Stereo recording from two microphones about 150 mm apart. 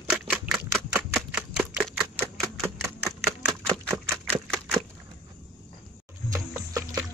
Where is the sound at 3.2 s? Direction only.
Centre (ahead or behind).